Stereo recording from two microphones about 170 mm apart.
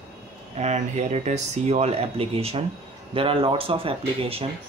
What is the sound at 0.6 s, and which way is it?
Speech, 40° right (ahead or behind).